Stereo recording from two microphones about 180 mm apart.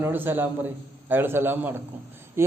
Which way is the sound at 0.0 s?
10° right (ahead or behind).